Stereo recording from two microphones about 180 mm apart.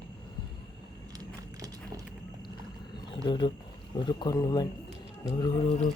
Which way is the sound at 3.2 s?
25° left (ahead or behind).